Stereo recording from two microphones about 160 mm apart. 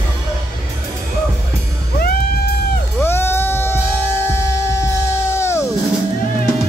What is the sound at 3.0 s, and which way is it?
Music, 15° left (ahead or behind).